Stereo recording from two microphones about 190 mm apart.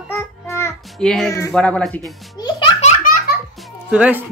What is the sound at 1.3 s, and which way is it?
Speech, 15° left (ahead or behind).